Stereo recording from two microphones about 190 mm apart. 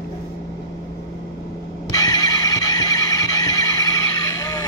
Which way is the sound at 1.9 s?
20° left (ahead or behind).